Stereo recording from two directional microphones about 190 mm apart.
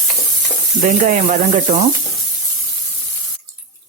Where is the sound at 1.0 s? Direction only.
40° right (ahead or behind).